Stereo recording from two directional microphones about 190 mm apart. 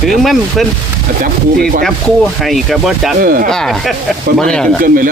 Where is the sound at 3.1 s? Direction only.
50° right (ahead or behind).